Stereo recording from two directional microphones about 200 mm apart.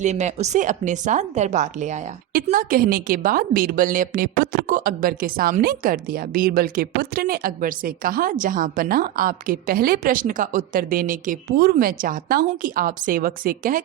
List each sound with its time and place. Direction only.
0.0 s a woman's voice: 35° right (ahead or behind)